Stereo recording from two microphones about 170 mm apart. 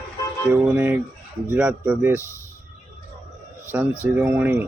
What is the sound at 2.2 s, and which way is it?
Speech, 15° left (ahead or behind).